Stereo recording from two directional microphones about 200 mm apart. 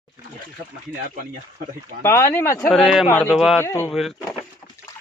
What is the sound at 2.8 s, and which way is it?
Speech, centre (ahead or behind).